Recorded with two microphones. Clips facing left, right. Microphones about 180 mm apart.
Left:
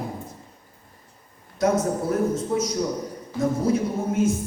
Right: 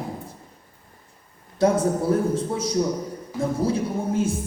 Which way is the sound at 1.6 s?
30° right (ahead or behind).